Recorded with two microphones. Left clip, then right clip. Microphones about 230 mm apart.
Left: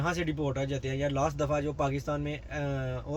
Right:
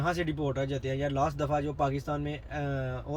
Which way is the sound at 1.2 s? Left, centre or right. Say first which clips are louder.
Right 1 dB; centre.